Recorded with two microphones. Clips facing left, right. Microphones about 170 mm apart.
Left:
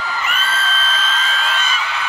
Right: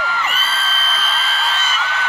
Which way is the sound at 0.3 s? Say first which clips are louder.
Left 2 dB; 30° right (ahead or behind).